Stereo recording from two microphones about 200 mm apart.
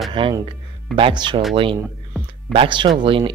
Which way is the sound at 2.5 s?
25° right (ahead or behind).